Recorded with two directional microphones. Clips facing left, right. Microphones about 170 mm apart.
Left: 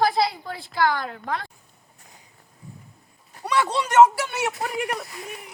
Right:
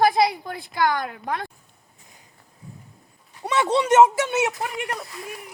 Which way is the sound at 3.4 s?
20° right (ahead or behind).